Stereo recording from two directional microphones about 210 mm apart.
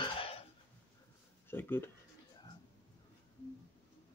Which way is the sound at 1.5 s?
10° left (ahead or behind).